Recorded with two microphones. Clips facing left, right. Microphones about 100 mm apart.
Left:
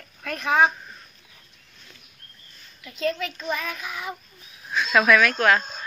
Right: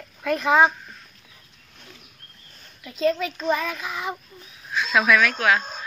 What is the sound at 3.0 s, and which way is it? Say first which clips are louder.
A child's voice: right 4 dB; 30° right (ahead or behind).